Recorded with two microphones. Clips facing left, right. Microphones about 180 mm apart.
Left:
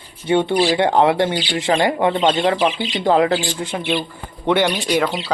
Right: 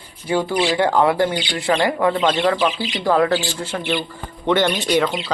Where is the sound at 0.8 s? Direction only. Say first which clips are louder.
Right 1 dB; 20° left (ahead or behind).